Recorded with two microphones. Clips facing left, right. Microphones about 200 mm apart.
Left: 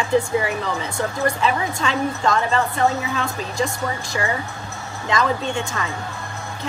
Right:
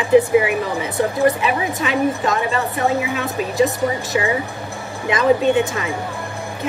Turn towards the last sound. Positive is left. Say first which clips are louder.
# right 8 dB
turn(degrees=-20)  # may be behind; listen again after turning